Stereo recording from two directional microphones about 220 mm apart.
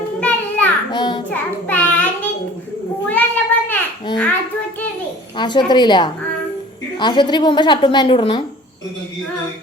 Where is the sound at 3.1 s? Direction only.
5° left (ahead or behind).